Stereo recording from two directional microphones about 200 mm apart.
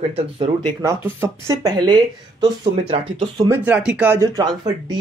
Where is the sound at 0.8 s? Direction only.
15° right (ahead or behind).